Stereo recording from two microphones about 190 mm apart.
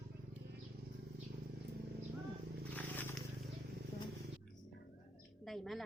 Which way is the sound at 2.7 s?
10° left (ahead or behind).